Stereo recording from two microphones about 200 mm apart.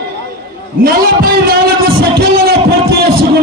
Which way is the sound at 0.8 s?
50° right (ahead or behind).